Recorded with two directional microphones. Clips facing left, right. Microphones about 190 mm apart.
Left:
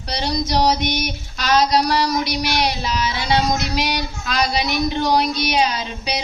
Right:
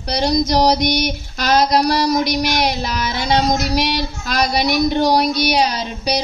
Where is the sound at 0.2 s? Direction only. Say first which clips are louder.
Right 4 dB; 40° right (ahead or behind).